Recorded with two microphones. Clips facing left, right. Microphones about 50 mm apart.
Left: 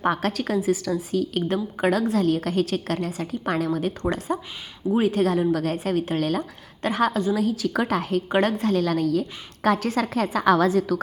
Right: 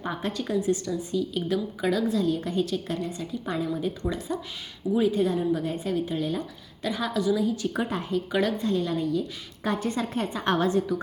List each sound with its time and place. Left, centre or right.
0.0 s a woman's voice: left
6.8 s a woman's voice: left
7.3 s a woman's voice: left
8.3 s a woman's voice: left
8.5 s a woman's voice: left